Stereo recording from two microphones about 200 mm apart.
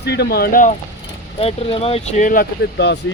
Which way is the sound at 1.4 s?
30° left (ahead or behind).